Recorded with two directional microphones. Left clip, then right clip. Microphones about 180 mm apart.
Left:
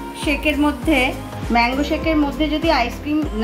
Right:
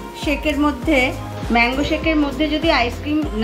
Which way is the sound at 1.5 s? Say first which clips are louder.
Right 1 dB; centre (ahead or behind).